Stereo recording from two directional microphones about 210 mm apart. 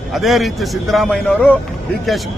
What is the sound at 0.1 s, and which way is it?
A man's voice, centre (ahead or behind).